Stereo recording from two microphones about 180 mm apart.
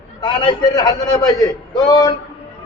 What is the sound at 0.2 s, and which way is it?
A man's voice, 25° left (ahead or behind).